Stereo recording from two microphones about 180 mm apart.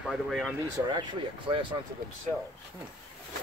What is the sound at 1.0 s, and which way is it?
Speech, 25° right (ahead or behind).